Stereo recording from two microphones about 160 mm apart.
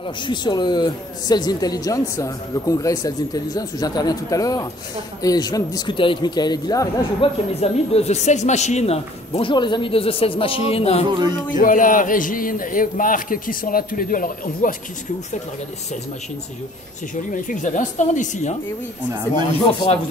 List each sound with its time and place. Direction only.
0.3 s speech: 25° left (ahead or behind)
7.2 s speech: 40° left (ahead or behind)
11.1 s speech: 30° right (ahead or behind)
11.6 s a man's voice: 55° left (ahead or behind)
17.1 s speech: 55° left (ahead or behind)
19.6 s speech: 30° left (ahead or behind)